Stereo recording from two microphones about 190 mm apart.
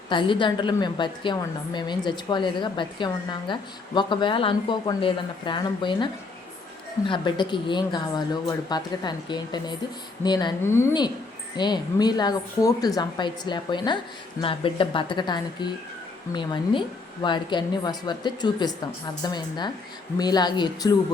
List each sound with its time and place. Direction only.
0.1 s a woman's voice: 25° left (ahead or behind)
7.1 s a woman's voice: 25° left (ahead or behind)